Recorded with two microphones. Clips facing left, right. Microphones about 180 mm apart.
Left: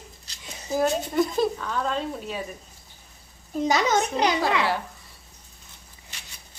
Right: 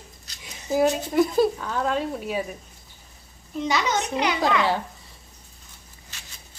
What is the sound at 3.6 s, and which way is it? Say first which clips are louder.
A child's voice: left 3 dB; 45° left (ahead or behind).